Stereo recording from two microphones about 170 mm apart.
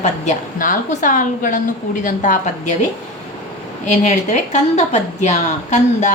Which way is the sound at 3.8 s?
45° left (ahead or behind).